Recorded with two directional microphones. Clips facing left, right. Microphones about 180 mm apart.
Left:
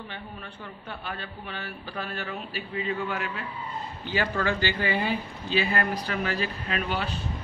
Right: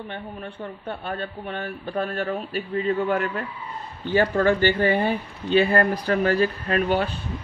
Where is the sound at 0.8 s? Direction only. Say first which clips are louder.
Right 7 dB; 35° right (ahead or behind).